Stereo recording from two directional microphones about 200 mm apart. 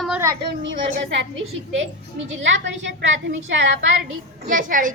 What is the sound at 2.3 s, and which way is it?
A woman's voice, 65° right (ahead or behind).